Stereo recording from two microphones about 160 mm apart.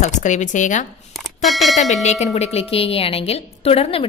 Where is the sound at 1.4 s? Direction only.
Centre (ahead or behind).